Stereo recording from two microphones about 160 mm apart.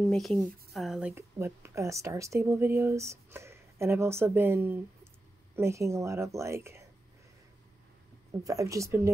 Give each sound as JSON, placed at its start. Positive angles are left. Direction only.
{"t": 0.0, "sound": "speech", "side_deg": 0}
{"t": 1.1, "sound": "speech", "side_deg": -15}
{"t": 8.3, "sound": "speech", "side_deg": -20}